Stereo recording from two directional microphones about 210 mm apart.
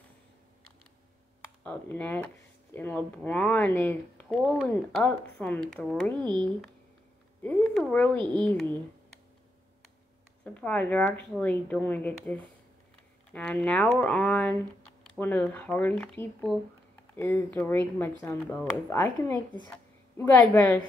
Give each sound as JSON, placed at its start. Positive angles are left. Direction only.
{"t": 1.6, "sound": "speech", "side_deg": 5}
{"t": 6.2, "sound": "speech", "side_deg": -20}
{"t": 7.4, "sound": "speech", "side_deg": 5}
{"t": 10.4, "sound": "a woman's voice", "side_deg": 5}